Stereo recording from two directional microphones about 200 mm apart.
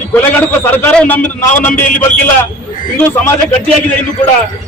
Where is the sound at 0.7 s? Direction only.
5° left (ahead or behind).